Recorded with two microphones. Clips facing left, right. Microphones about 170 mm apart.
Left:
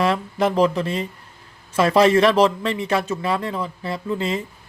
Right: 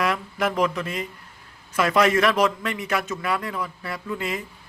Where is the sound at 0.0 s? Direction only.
30° left (ahead or behind).